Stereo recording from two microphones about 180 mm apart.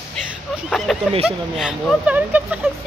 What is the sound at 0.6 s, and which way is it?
A woman's voice, centre (ahead or behind).